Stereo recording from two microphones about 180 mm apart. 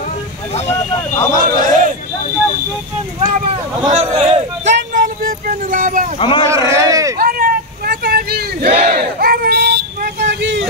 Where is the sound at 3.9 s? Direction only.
35° right (ahead or behind).